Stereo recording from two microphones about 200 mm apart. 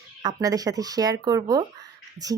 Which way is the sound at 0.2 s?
20° right (ahead or behind).